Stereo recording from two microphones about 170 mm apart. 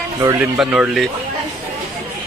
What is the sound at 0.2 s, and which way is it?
Speech, 20° right (ahead or behind).